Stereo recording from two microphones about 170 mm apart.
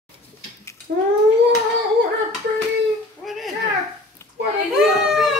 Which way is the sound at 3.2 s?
Centre (ahead or behind).